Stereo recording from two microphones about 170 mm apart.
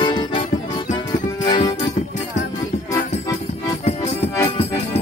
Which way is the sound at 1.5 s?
20° left (ahead or behind).